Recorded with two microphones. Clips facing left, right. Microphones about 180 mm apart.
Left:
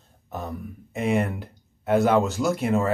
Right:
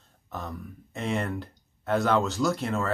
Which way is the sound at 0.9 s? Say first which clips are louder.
Left 6 dB; 10° left (ahead or behind).